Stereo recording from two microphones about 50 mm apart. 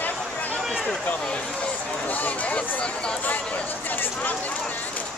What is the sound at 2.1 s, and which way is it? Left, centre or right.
Speech, left.